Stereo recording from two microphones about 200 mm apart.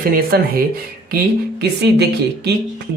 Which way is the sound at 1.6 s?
55° right (ahead or behind).